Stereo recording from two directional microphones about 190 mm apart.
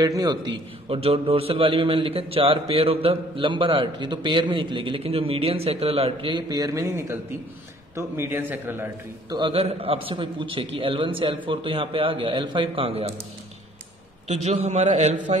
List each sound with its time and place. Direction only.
0.0 s a man's voice: 20° right (ahead or behind)
9.4 s a man's voice: 30° right (ahead or behind)
14.2 s a man's voice: 35° right (ahead or behind)